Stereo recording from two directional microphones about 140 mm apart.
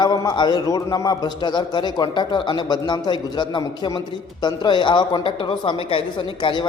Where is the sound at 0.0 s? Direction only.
30° left (ahead or behind).